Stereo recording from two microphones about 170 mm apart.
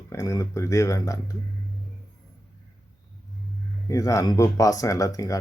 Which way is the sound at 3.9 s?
20° left (ahead or behind).